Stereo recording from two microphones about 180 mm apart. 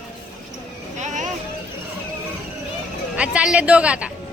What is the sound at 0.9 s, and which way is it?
Vehicle, 40° right (ahead or behind).